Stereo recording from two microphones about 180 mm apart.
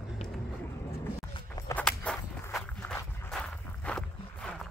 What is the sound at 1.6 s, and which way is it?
Walk, 15° left (ahead or behind).